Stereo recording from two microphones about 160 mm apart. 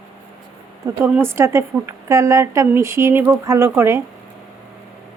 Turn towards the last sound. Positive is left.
turn(degrees=-15)  # may be behind; listen again after turning